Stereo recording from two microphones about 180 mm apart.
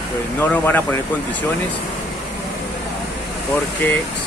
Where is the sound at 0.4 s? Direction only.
10° left (ahead or behind).